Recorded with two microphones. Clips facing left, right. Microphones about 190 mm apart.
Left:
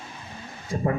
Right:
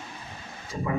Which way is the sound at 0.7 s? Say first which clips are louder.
Left 6 dB; 55° left (ahead or behind).